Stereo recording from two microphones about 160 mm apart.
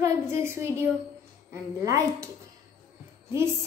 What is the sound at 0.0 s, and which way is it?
A woman's voice, 15° right (ahead or behind).